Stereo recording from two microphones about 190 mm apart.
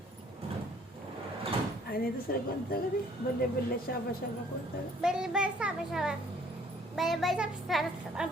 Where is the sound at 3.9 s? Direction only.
50° left (ahead or behind).